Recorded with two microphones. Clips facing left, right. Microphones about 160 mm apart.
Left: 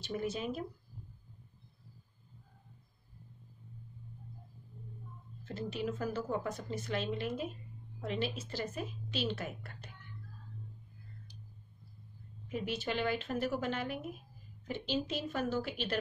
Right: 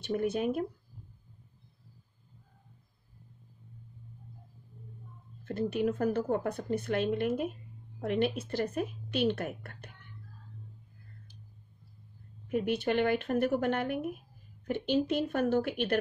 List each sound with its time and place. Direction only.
0.0 s a woman's voice: 60° right (ahead or behind)
5.4 s a woman's voice: 55° right (ahead or behind)
12.4 s a woman's voice: 55° right (ahead or behind)